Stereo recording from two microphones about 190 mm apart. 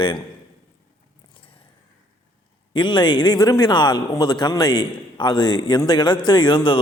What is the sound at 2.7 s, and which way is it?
A man's voice, 25° left (ahead or behind).